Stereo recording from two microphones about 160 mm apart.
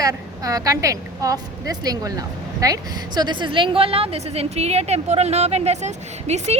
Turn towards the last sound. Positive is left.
turn(degrees=-45)  # may be behind; listen again after turning